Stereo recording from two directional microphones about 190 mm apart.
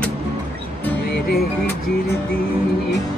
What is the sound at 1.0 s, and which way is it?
Music, 55° left (ahead or behind).